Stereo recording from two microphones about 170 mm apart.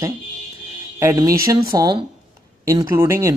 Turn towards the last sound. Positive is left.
turn(degrees=-15)  # may be behind; listen again after turning